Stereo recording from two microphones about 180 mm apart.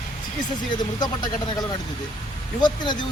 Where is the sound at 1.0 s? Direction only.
25° left (ahead or behind).